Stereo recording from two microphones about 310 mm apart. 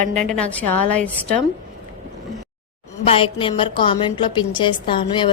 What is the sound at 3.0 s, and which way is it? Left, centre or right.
A woman's voice, centre.